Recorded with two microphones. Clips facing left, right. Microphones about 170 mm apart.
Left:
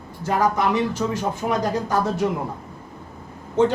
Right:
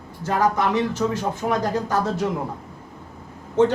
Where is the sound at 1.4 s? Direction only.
10° left (ahead or behind).